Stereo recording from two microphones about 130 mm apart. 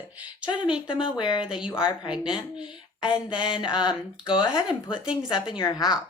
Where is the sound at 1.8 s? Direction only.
40° left (ahead or behind).